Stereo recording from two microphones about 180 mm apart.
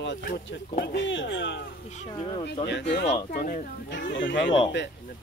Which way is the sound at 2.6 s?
75° left (ahead or behind).